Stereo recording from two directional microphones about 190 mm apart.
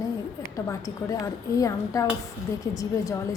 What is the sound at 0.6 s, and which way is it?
A woman's voice, 15° left (ahead or behind).